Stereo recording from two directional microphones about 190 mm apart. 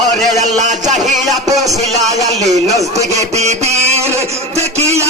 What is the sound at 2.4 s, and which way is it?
A man's voice, 40° right (ahead or behind).